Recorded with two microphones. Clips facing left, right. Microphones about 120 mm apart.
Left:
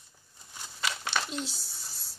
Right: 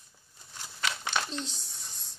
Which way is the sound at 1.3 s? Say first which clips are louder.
Left 1 dB; 5° left (ahead or behind).